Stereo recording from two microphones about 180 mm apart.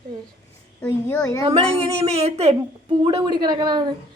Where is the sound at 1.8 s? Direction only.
35° right (ahead or behind).